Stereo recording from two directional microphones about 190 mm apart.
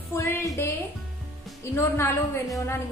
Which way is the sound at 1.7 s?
15° left (ahead or behind).